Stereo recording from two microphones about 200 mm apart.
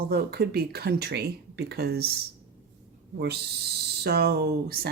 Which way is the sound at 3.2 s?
55° right (ahead or behind).